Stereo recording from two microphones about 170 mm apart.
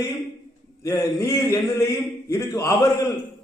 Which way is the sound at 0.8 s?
20° left (ahead or behind).